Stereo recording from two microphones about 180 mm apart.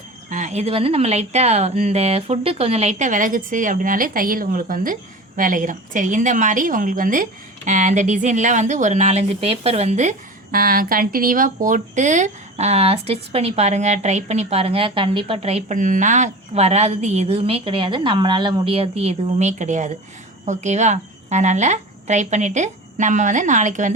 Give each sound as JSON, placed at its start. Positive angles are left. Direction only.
{"t": 0.3, "sound": "a woman's voice", "side_deg": -45}